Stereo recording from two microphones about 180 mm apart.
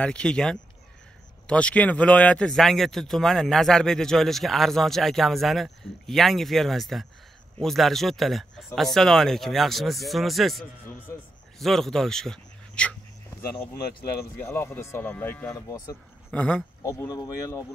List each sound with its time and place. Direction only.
0.0 s a man's voice: 5° left (ahead or behind)
14.4 s speech: 15° left (ahead or behind)
16.3 s speech: 5° left (ahead or behind)
16.8 s speech: 20° left (ahead or behind)